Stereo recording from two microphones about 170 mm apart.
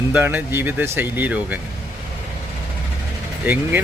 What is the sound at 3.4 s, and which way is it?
Speech, 10° right (ahead or behind).